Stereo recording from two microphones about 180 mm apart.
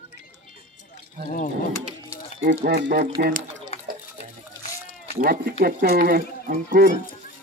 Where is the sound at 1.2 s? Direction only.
60° right (ahead or behind).